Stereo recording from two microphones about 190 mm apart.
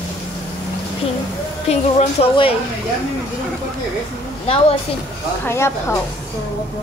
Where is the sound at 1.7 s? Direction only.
30° left (ahead or behind).